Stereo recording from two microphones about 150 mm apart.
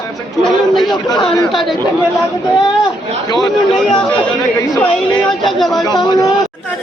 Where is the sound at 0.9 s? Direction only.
30° left (ahead or behind).